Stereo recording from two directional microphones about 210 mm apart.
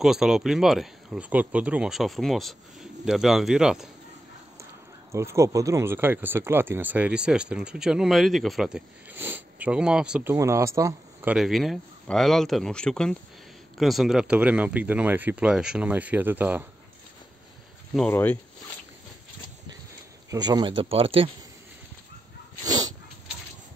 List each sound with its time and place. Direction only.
0.0 s speech: centre (ahead or behind)
5.1 s speech: 15° right (ahead or behind)
17.9 s speech: 5° left (ahead or behind)
20.2 s speech: 20° right (ahead or behind)
22.7 s dog: 20° right (ahead or behind)